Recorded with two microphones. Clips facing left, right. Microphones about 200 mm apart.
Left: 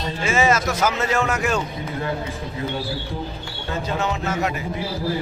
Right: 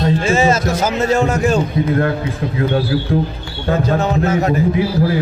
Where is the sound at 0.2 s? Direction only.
30° right (ahead or behind).